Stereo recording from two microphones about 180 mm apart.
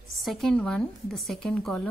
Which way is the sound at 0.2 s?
Centre (ahead or behind).